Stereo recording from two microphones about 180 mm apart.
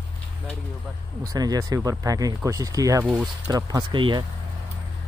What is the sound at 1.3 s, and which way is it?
Speech, 20° right (ahead or behind).